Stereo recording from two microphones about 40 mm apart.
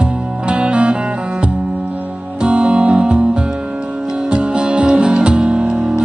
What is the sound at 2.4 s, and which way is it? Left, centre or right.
Music, right.